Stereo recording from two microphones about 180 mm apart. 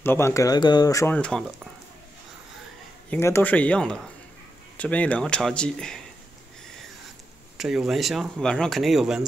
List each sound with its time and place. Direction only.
0.0 s speech: 15° left (ahead or behind)
1.1 s speech: 5° left (ahead or behind)
3.1 s speech: 15° left (ahead or behind)
7.5 s speech: 5° right (ahead or behind)